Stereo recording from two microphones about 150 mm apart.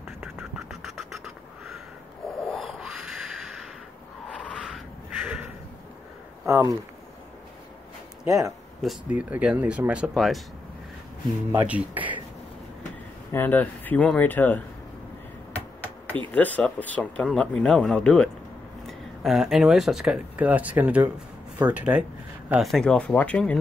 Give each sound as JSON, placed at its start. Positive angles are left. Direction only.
{"t": 0.6, "sound": "a sound", "side_deg": 0}
{"t": 5.2, "sound": "a sound", "side_deg": -10}
{"t": 6.4, "sound": "speech", "side_deg": -20}
{"t": 8.3, "sound": "speech", "side_deg": -25}
{"t": 8.8, "sound": "speech", "side_deg": -10}
{"t": 11.5, "sound": "speech", "side_deg": -10}
{"t": 13.3, "sound": "speech", "side_deg": 10}
{"t": 16.3, "sound": "speech", "side_deg": 10}